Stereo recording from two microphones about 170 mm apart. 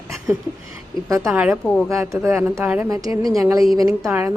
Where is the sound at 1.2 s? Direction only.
5° right (ahead or behind).